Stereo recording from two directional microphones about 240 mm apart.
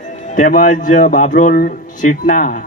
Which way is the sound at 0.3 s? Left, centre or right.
Left.